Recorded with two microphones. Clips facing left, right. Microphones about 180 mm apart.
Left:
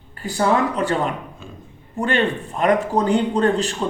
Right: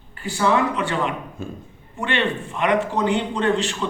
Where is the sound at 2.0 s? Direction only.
40° left (ahead or behind).